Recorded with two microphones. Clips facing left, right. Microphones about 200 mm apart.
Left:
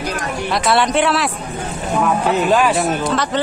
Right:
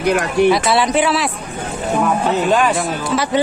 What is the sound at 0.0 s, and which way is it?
Speech, 60° right (ahead or behind).